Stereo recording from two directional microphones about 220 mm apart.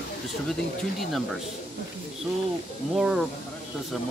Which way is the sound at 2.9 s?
5° right (ahead or behind).